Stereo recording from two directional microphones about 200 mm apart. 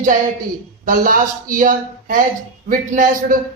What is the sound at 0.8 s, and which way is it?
A woman's voice, 45° right (ahead or behind).